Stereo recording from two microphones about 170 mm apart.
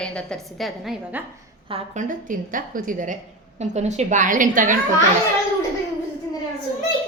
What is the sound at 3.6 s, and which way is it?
A woman's voice, 40° right (ahead or behind).